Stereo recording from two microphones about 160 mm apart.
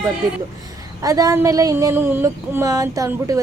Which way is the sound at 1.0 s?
20° right (ahead or behind).